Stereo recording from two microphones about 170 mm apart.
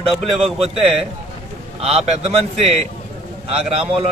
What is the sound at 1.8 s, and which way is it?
A man's voice, 40° right (ahead or behind).